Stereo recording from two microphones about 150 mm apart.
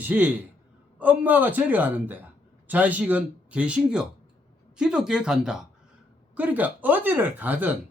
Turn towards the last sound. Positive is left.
turn(degrees=-10)  # may be behind; listen again after turning